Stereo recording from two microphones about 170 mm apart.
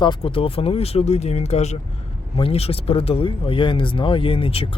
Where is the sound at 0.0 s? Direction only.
30° left (ahead or behind).